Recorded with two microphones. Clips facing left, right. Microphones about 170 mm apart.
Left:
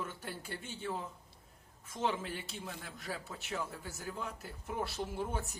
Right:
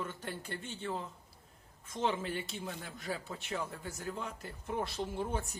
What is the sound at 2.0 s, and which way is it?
A man's voice, centre (ahead or behind).